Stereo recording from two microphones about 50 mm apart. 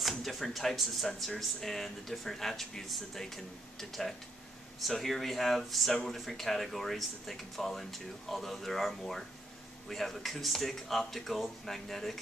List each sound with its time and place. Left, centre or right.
0.0 s speech: centre